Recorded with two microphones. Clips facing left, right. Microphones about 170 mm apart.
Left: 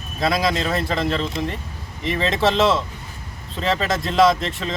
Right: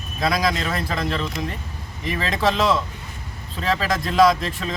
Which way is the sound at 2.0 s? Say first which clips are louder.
Left 2 dB; 30° left (ahead or behind).